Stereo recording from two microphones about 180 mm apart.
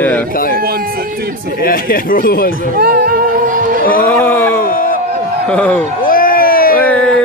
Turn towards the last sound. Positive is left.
turn(degrees=55)  # may be behind; listen again after turning